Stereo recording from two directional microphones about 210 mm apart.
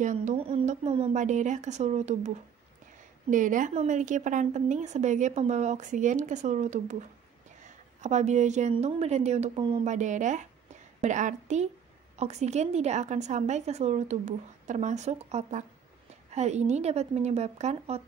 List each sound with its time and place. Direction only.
0.0 s a woman's voice: 35° right (ahead or behind)